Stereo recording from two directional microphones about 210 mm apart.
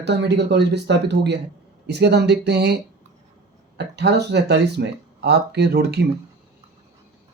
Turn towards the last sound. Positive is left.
turn(degrees=-50)  # may be behind; listen again after turning